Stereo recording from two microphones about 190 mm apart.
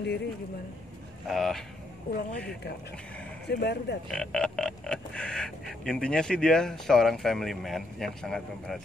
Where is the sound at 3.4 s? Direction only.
60° left (ahead or behind).